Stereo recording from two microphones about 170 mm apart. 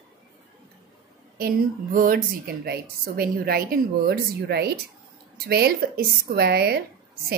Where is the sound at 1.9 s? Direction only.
55° right (ahead or behind).